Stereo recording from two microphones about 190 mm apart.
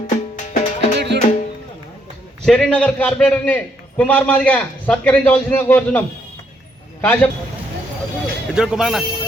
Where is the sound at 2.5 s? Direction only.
5° left (ahead or behind).